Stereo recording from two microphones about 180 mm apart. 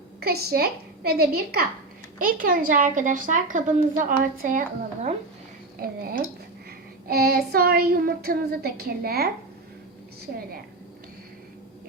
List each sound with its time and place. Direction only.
0.2 s child singing: 60° right (ahead or behind)
2.1 s a woman's voice: 50° right (ahead or behind)
5.8 s child singing: 55° right (ahead or behind)